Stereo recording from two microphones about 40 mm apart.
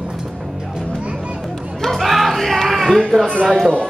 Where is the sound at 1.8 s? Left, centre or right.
Centre.